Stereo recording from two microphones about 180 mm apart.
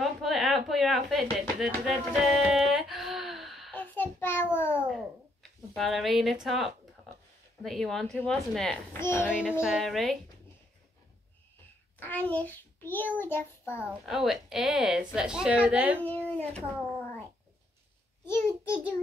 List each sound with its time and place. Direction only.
0.0 s a sound: centre (ahead or behind)
4.8 s babbling: centre (ahead or behind)
5.8 s a woman's voice: centre (ahead or behind)
12.0 s a child's voice: 10° left (ahead or behind)
13.2 s child singing: 10° left (ahead or behind)
14.0 s a woman's voice: centre (ahead or behind)
16.0 s child singing: 10° left (ahead or behind)
18.2 s a child's voice: 15° left (ahead or behind)